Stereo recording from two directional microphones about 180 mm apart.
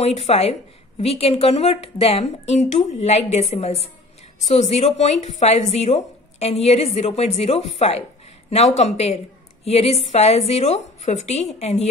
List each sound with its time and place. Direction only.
0.0 s a woman's voice: 35° left (ahead or behind)